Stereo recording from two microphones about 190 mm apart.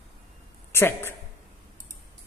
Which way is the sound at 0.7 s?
10° left (ahead or behind).